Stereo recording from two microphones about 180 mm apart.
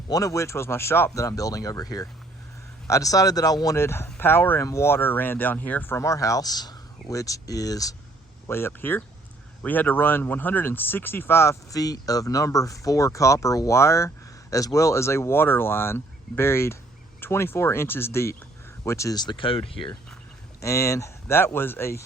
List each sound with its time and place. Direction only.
0.1 s speech: 20° left (ahead or behind)
20.6 s speech: 15° left (ahead or behind)